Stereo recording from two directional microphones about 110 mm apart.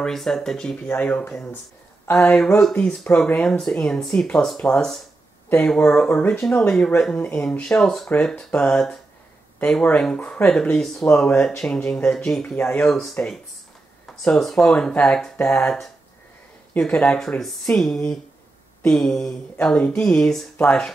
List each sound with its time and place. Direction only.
0.0 s speech: 5° left (ahead or behind)
0.8 s speech: 15° left (ahead or behind)
14.2 s speech: 5° left (ahead or behind)